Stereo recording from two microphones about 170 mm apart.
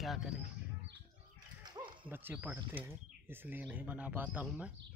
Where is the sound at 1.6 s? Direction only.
25° right (ahead or behind).